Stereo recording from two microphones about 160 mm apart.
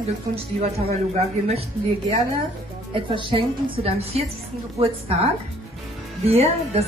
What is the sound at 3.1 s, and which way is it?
A woman's voice, 30° right (ahead or behind).